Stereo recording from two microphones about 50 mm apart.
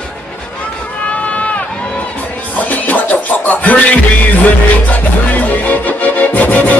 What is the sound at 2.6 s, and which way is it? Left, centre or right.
Music, left.